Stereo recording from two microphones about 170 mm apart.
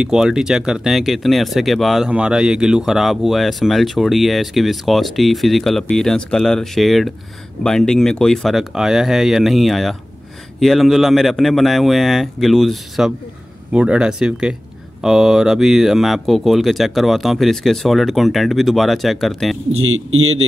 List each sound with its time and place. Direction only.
0.0 s speech: 5° right (ahead or behind)